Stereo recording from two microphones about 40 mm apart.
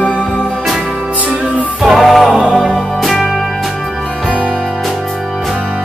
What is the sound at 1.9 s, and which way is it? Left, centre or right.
Music, centre.